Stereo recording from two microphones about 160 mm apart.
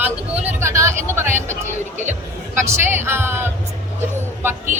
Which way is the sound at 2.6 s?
15° right (ahead or behind).